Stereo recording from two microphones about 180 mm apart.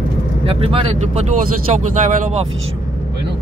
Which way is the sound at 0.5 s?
30° right (ahead or behind).